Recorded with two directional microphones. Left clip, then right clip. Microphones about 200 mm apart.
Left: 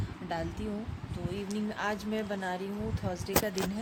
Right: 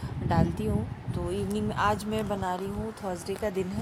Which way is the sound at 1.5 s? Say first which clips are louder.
Right 7 dB; 15° right (ahead or behind).